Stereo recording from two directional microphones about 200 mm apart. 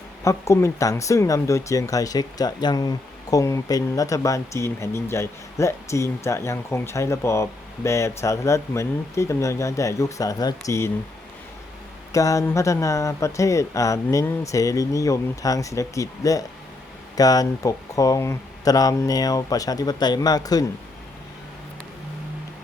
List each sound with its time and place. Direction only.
0.3 s speech: 15° left (ahead or behind)
12.1 s speech: 15° left (ahead or behind)